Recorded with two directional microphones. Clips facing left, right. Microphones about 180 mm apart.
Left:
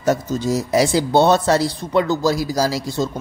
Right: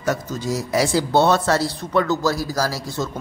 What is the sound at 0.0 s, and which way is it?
Speech, 25° left (ahead or behind).